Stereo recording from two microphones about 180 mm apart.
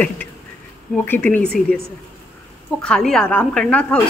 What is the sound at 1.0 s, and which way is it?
Speech, 10° left (ahead or behind).